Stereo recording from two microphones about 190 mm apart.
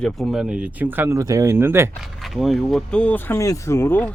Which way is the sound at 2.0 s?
Centre (ahead or behind).